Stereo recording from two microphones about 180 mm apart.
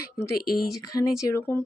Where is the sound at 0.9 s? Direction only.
15° left (ahead or behind).